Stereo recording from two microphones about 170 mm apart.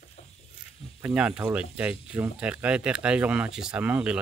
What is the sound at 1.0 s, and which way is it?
Speech, 5° right (ahead or behind).